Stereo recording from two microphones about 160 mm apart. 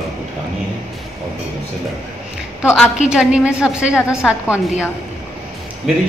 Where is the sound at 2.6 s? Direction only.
Centre (ahead or behind).